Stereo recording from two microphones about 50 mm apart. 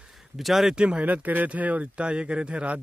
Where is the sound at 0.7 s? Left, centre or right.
Right.